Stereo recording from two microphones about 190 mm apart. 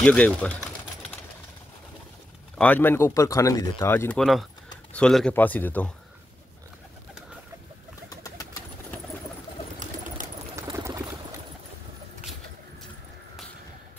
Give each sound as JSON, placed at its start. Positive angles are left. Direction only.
{"t": 0.0, "sound": "speech", "side_deg": 5}
{"t": 2.5, "sound": "speech", "side_deg": 10}
{"t": 4.2, "sound": "speech", "side_deg": 0}
{"t": 8.1, "sound": "bird", "side_deg": 15}
{"t": 10.2, "sound": "bird", "side_deg": -45}
{"t": 10.5, "sound": "a sound", "side_deg": -15}